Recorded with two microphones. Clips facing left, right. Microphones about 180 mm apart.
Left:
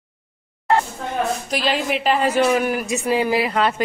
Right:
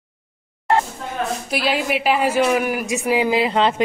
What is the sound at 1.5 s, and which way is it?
Speech, 5° right (ahead or behind).